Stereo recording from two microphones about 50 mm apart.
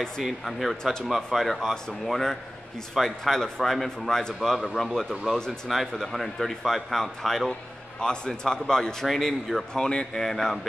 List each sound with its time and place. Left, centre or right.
0.2 s speech: centre
5.7 s speech: centre
9.8 s speech: centre
10.2 s speech: centre